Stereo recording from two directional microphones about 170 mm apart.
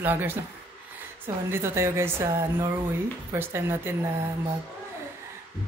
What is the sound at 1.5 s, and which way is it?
Speech, 15° right (ahead or behind).